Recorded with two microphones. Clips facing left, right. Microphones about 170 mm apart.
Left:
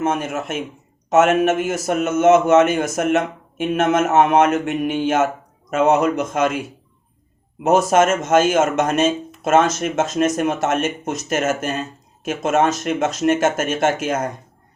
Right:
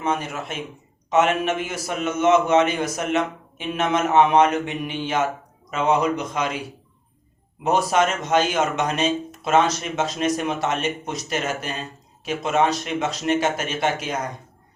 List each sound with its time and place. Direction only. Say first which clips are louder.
0.0 s speech: left 4 dB; 50° left (ahead or behind)